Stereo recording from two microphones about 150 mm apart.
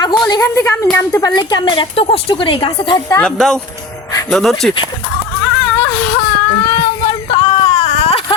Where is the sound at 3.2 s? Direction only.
5° left (ahead or behind).